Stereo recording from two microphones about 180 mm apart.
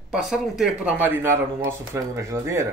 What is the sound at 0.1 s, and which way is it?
Speech, 5° right (ahead or behind).